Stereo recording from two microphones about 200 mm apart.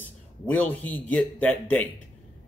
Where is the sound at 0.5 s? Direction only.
10° left (ahead or behind).